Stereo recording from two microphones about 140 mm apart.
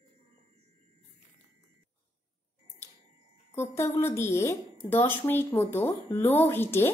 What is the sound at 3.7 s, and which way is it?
A woman's voice, 15° left (ahead or behind).